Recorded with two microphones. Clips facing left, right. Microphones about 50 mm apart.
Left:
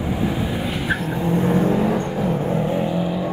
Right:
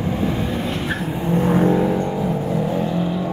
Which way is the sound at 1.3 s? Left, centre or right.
Right.